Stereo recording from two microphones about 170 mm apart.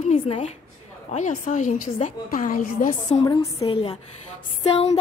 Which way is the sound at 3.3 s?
20° left (ahead or behind).